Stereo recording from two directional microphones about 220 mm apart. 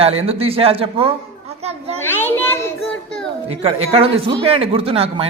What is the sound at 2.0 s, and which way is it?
Children playing, 10° left (ahead or behind).